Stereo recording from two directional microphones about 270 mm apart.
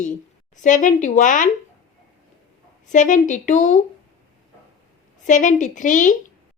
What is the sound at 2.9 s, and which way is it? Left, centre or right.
Speech, left.